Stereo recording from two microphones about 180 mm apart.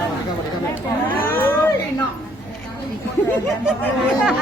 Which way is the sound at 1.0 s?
10° left (ahead or behind).